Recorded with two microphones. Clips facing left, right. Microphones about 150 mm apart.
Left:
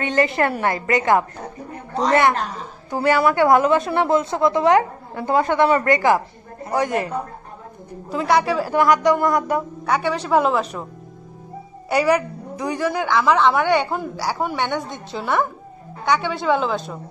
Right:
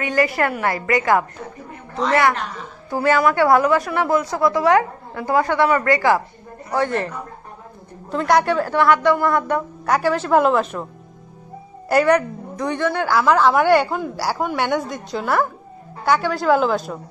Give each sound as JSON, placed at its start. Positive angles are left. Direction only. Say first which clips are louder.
{"t": 0.0, "sound": "a woman's voice", "louder": "even", "side_deg": 25}
{"t": 2.9, "sound": "a woman's voice", "louder": "even", "side_deg": 20}
{"t": 8.7, "sound": "a woman's voice", "louder": "left 1 dB", "side_deg": 15}
{"t": 9.8, "sound": "speech", "louder": "right 3 dB", "side_deg": 0}
{"t": 11.9, "sound": "a woman's voice", "louder": "right 2 dB", "side_deg": 5}
{"t": 13.1, "sound": "a woman's voice", "louder": "right 1 dB", "side_deg": 0}